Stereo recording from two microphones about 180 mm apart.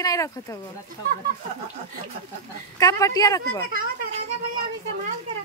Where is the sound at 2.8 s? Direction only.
20° left (ahead or behind).